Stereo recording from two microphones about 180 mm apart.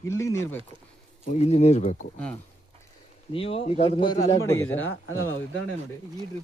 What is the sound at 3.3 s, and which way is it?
A man's voice, 30° left (ahead or behind).